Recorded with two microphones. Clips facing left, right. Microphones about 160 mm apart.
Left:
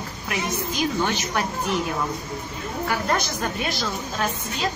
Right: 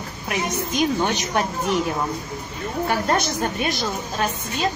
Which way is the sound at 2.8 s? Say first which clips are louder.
Right 3 dB; 25° right (ahead or behind).